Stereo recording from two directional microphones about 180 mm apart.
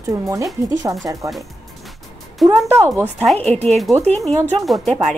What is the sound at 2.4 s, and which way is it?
Speech, centre (ahead or behind).